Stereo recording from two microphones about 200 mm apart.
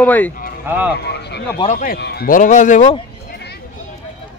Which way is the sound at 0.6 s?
10° right (ahead or behind).